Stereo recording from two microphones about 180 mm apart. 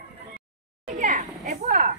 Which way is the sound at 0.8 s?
45° right (ahead or behind).